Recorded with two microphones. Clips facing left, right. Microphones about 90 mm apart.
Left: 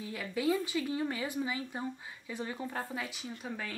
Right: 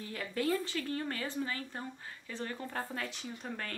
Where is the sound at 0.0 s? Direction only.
5° left (ahead or behind).